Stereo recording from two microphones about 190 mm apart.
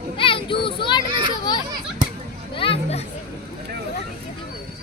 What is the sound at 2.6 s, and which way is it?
Speech, 30° left (ahead or behind).